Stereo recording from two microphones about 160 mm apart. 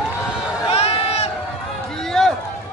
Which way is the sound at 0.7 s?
40° left (ahead or behind).